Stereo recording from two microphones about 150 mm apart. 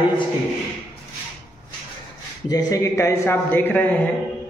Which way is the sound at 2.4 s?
25° left (ahead or behind).